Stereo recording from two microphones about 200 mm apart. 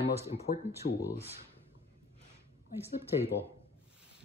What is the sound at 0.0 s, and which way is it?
Speech, 30° left (ahead or behind).